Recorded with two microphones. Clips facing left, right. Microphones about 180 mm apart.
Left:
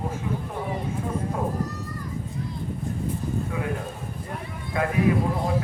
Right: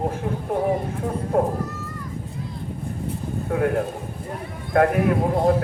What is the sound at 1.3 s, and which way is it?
Speech, 65° right (ahead or behind).